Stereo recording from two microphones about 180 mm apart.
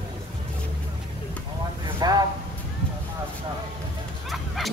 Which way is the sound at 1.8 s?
20° right (ahead or behind).